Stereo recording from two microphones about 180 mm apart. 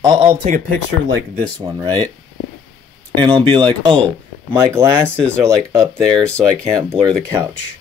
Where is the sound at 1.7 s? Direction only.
20° right (ahead or behind).